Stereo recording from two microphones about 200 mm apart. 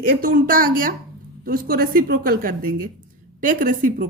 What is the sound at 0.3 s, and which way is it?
Speech, 45° right (ahead or behind).